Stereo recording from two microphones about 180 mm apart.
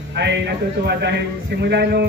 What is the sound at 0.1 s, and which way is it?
A man's voice, 75° right (ahead or behind).